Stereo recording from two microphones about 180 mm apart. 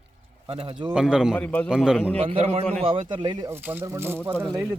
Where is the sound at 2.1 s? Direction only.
35° right (ahead or behind).